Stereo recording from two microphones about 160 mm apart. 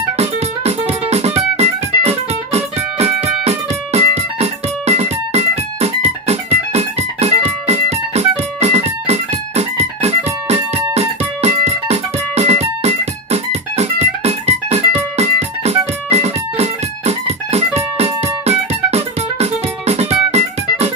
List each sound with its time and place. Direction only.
0.2 s music: 40° right (ahead or behind)